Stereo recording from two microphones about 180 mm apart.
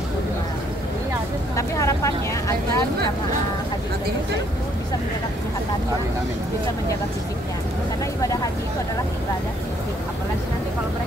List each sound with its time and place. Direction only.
1.6 s vehicle: 15° left (ahead or behind)